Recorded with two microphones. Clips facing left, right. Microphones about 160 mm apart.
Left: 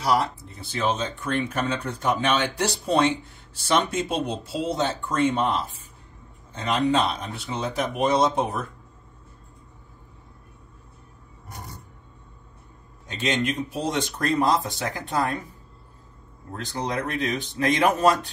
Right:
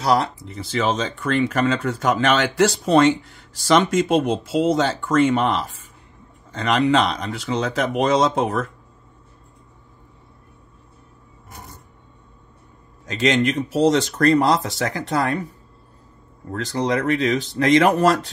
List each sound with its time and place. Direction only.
0.0 s speech: 90° right
13.0 s speech: 90° right
16.5 s speech: 90° right